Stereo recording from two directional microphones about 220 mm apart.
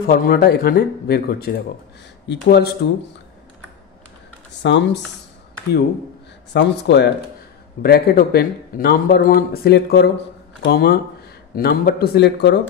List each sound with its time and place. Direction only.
0.0 s a man's voice: 40° left (ahead or behind)
4.6 s a man's voice: 55° left (ahead or behind)
6.5 s a man's voice: 50° left (ahead or behind)